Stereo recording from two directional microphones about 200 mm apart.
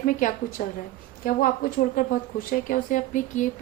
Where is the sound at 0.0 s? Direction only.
40° left (ahead or behind).